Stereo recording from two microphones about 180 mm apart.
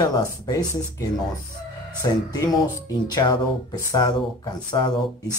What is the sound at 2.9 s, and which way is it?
Speech, 20° left (ahead or behind).